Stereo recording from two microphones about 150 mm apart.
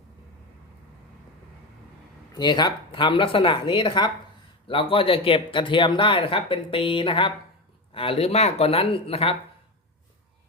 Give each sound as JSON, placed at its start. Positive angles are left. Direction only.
{"t": 2.3, "sound": "speech", "side_deg": 30}